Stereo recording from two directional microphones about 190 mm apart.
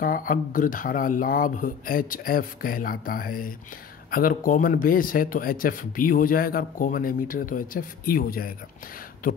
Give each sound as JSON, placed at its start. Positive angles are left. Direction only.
{"t": 0.0, "sound": "speech", "side_deg": 45}